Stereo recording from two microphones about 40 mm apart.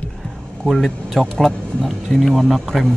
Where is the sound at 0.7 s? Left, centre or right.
Centre.